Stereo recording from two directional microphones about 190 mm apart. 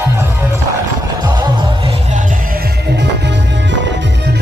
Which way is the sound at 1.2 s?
20° right (ahead or behind).